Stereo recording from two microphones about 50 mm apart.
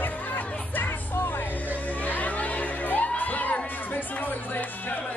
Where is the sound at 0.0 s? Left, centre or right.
Left.